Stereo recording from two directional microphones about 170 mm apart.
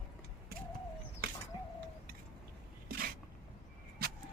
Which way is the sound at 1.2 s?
65° right (ahead or behind).